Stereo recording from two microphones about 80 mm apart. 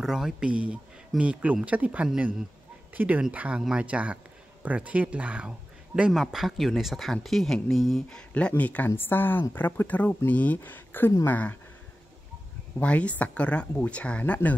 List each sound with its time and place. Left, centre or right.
0.0 s speech: centre
6.1 s speech: centre
8.4 s speech: centre
12.7 s speech: centre